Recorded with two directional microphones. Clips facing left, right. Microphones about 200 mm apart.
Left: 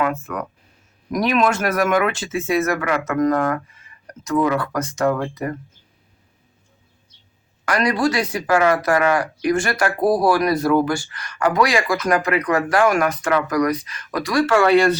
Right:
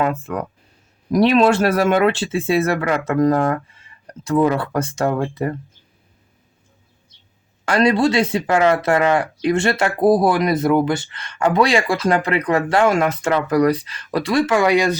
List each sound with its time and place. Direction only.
0.0 s speech: 30° right (ahead or behind)
7.6 s speech: 30° right (ahead or behind)